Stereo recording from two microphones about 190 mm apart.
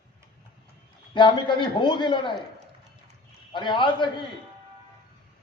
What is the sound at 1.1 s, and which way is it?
A man's voice, 25° left (ahead or behind).